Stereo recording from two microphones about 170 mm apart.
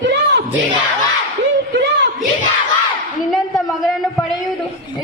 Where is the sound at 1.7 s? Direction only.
90° right.